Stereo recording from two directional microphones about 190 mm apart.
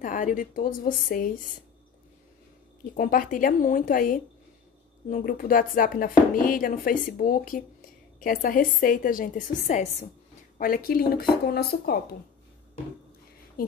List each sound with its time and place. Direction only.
0.0 s speech: 45° left (ahead or behind)
2.8 s speech: 45° left (ahead or behind)
10.6 s speech: 50° left (ahead or behind)